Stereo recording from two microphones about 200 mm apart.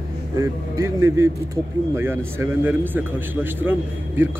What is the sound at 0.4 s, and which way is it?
Speech, 15° right (ahead or behind).